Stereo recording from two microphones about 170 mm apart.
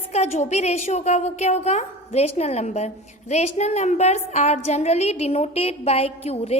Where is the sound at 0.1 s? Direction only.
40° left (ahead or behind).